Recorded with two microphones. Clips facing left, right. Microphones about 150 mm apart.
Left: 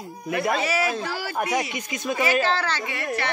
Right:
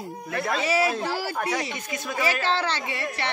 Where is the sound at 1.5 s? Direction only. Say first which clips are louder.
Left 3 dB; 15° left (ahead or behind).